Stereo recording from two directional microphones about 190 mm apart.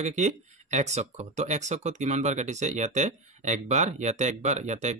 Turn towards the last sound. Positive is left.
turn(degrees=-35)  # may be behind; listen again after turning